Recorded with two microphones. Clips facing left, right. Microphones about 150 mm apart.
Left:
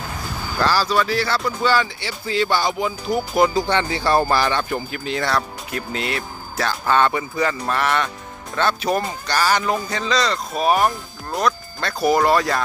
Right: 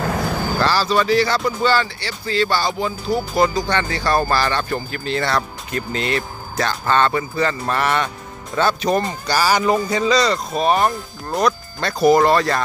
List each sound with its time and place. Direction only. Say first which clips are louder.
0.0 s vehicle: right 8 dB; 75° right (ahead or behind)
0.7 s speech: right 2 dB; 10° left (ahead or behind)
1.7 s speech: right 1 dB; 10° left (ahead or behind)